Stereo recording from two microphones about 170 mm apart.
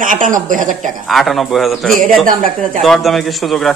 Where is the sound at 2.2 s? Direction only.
50° right (ahead or behind).